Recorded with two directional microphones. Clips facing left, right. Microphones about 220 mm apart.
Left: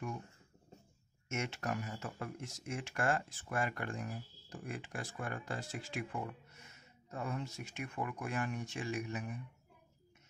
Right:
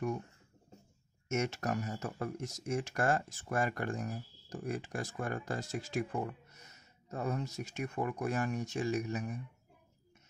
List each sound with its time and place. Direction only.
1.3 s speech: 40° right (ahead or behind)